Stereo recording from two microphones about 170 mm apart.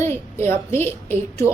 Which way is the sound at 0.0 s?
15° left (ahead or behind).